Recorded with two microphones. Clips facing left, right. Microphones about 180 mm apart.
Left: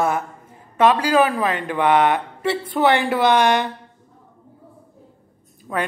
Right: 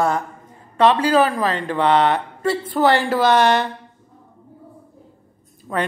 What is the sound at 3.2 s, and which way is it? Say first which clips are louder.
Speech: right 1 dB; 15° left (ahead or behind).